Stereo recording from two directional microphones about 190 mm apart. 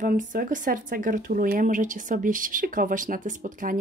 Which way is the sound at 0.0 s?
45° right (ahead or behind).